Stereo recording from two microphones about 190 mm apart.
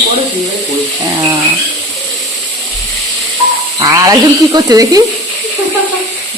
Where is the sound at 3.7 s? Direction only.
20° right (ahead or behind).